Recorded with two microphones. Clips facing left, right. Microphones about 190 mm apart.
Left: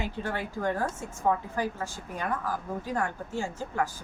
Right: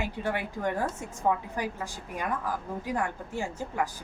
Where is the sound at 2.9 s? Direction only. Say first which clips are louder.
Even; 15° right (ahead or behind).